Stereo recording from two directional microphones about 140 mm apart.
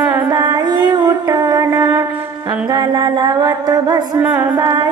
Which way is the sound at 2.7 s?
30° right (ahead or behind).